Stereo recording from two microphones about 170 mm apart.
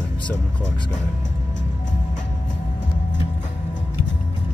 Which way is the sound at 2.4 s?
90° left.